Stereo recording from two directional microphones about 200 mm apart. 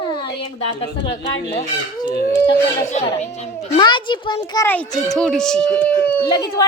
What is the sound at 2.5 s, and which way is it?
A child's voice, 30° left (ahead or behind).